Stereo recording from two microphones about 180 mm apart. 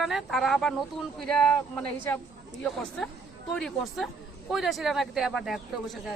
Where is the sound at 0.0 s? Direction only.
Centre (ahead or behind).